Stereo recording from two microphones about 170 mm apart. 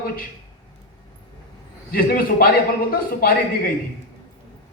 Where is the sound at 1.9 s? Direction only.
60° left (ahead or behind).